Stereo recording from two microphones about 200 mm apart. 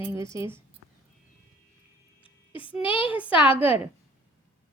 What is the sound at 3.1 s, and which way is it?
Speech, 5° right (ahead or behind).